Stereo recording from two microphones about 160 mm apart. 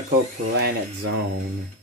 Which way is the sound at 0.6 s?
80° right.